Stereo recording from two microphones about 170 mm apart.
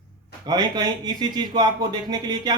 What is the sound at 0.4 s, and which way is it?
Speech, 25° right (ahead or behind).